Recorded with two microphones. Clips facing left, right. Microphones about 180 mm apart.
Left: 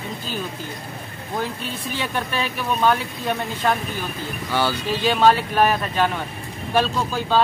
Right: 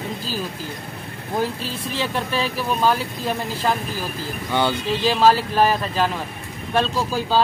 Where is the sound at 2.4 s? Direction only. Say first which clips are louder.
Left 1 dB; 5° right (ahead or behind).